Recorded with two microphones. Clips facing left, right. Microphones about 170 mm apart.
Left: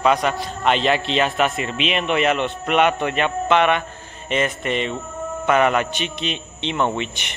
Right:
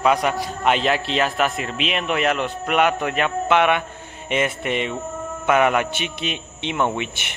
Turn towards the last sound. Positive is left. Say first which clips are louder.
# left 1 dB
turn(degrees=-10)  # may be behind; listen again after turning